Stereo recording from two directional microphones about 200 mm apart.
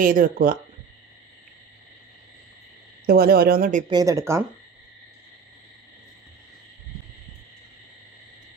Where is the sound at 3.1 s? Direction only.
50° right (ahead or behind).